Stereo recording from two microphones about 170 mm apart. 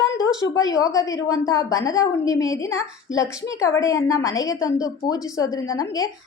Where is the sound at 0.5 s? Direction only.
20° left (ahead or behind).